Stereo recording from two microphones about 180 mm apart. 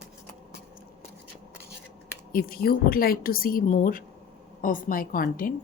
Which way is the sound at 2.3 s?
55° left (ahead or behind).